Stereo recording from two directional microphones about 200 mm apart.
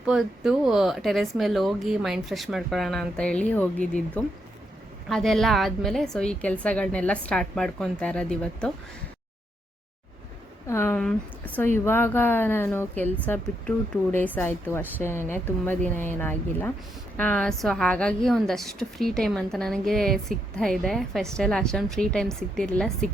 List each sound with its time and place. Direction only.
0.0 s a woman's voice: centre (ahead or behind)
10.7 s a woman's voice: 10° left (ahead or behind)